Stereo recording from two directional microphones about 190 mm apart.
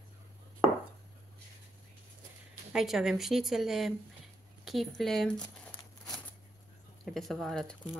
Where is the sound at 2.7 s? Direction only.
Centre (ahead or behind).